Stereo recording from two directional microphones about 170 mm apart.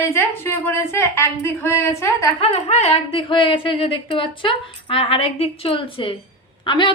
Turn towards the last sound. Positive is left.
turn(degrees=30)  # may be behind; listen again after turning